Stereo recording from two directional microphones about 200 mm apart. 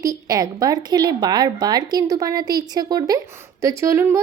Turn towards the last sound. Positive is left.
turn(degrees=-15)  # may be behind; listen again after turning